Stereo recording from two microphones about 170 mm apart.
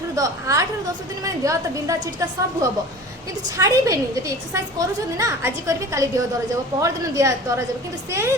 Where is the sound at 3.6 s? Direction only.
20° right (ahead or behind).